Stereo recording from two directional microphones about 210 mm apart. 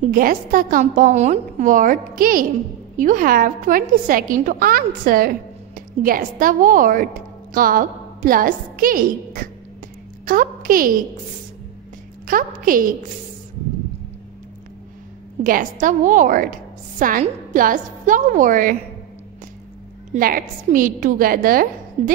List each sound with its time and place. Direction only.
0.0 s a woman's voice: 40° right (ahead or behind)
10.2 s a sound: 40° right (ahead or behind)
12.3 s a woman's voice: 40° right (ahead or behind)
15.4 s a woman's voice: 40° right (ahead or behind)
20.1 s a woman's voice: 40° right (ahead or behind)